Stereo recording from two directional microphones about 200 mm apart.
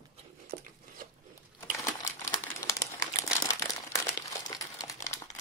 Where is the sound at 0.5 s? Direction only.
40° right (ahead or behind).